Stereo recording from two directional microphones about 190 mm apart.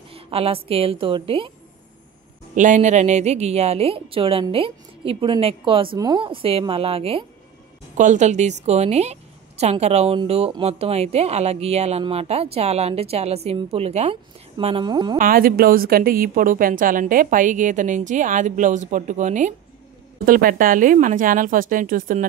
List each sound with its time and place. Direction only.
0.1 s a sound: 30° right (ahead or behind)
0.7 s a woman's voice: 30° right (ahead or behind)
2.5 s a woman's voice: 40° right (ahead or behind); by 15.1 s 25° right (ahead or behind)
15.1 s speech: 50° right (ahead or behind)